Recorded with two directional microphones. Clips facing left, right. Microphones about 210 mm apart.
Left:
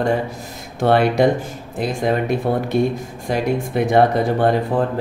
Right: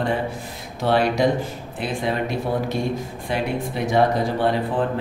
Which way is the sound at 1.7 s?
40° left (ahead or behind).